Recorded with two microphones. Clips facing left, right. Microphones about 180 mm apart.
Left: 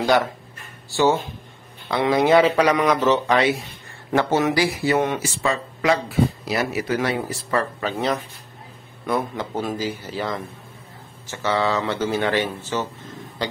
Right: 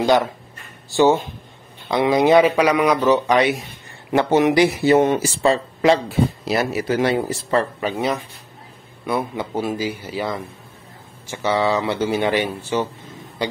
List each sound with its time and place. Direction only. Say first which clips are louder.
0.0 s speech: right 2 dB; 20° right (ahead or behind)
7.8 s speech: right 1 dB; 10° right (ahead or behind)
13.4 s a sound: right 3 dB; 15° right (ahead or behind)